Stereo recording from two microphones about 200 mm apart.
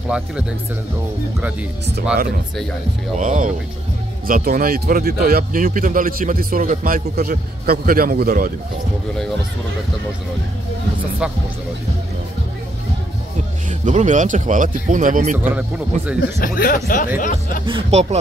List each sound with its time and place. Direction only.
0.1 s speech: 5° right (ahead or behind)
3.2 s speech: 40° right (ahead or behind)
13.7 s speech: 40° right (ahead or behind)
15.3 s speech: 10° right (ahead or behind)
16.2 s speech: 50° left (ahead or behind)
17.6 s speech: 25° right (ahead or behind)